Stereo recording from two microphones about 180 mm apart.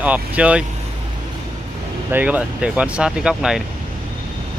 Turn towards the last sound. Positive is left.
turn(degrees=-5)  # may be behind; listen again after turning